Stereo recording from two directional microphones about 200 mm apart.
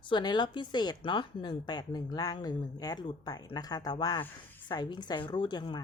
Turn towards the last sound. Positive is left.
turn(degrees=20)  # may be behind; listen again after turning